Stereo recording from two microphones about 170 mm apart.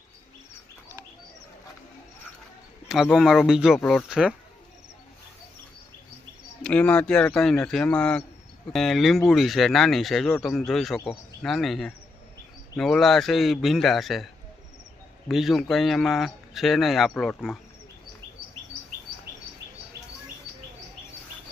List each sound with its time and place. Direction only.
2.9 s speech: centre (ahead or behind)
6.6 s speech: 5° left (ahead or behind)
15.3 s speech: centre (ahead or behind)